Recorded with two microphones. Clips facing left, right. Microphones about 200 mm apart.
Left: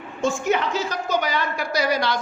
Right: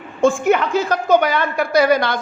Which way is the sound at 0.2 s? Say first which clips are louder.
Right 7 dB; 55° right (ahead or behind).